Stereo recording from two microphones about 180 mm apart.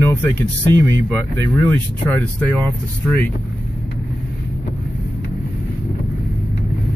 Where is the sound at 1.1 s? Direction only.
10° left (ahead or behind).